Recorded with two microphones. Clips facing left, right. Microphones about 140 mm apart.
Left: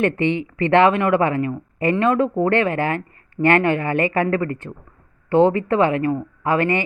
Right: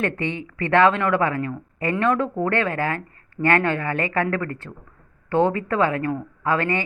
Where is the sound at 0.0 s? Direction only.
20° left (ahead or behind).